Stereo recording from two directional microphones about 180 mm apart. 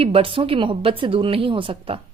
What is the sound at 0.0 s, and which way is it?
A woman's voice, 30° right (ahead or behind).